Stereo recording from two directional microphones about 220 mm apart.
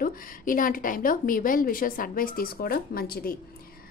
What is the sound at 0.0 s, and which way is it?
A woman's voice, 40° left (ahead or behind).